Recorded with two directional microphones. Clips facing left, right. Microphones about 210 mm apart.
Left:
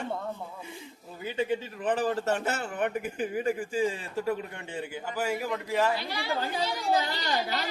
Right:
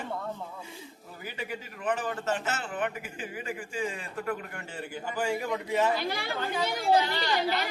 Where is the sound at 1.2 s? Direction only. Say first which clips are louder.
Left 8 dB; 25° left (ahead or behind); by 5.9 s centre (ahead or behind).